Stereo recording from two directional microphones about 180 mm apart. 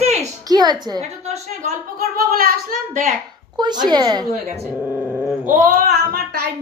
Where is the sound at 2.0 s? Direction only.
55° right (ahead or behind).